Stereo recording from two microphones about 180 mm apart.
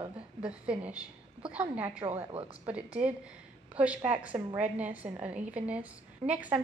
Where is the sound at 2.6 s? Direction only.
5° right (ahead or behind).